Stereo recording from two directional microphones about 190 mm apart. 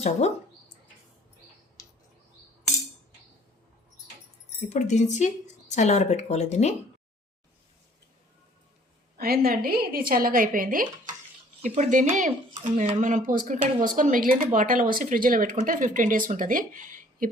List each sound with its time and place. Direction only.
4.4 s speech: 35° left (ahead or behind)
9.1 s speech: 50° right (ahead or behind)
13.6 s speech: 25° right (ahead or behind)
13.9 s speech: 45° right (ahead or behind)